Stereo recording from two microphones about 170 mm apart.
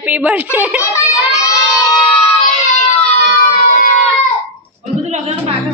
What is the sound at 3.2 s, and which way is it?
Siren, 55° left (ahead or behind).